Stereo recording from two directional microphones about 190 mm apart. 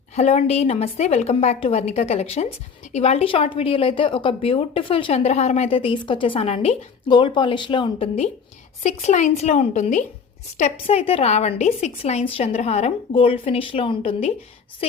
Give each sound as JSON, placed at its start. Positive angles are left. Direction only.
{"t": 0.2, "sound": "a woman's voice", "side_deg": 35}